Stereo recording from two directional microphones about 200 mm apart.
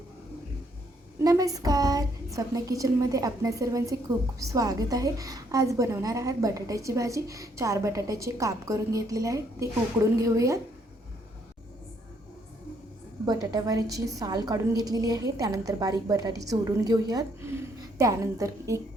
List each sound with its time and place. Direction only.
1.2 s a woman's voice: 15° right (ahead or behind)
13.2 s a woman's voice: 20° right (ahead or behind)